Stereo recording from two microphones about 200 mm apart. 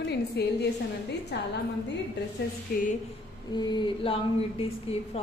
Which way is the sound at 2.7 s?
50° left (ahead or behind).